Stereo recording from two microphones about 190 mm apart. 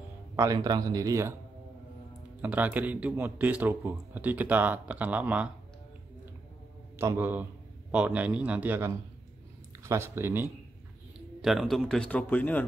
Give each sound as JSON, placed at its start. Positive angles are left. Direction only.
{"t": 0.4, "sound": "speech", "side_deg": -20}
{"t": 2.4, "sound": "a man's voice", "side_deg": -10}
{"t": 7.0, "sound": "a man's voice", "side_deg": -10}
{"t": 11.1, "sound": "a man's voice", "side_deg": 0}